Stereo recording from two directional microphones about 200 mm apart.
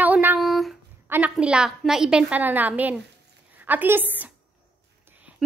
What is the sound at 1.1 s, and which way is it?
A woman's voice, 5° right (ahead or behind).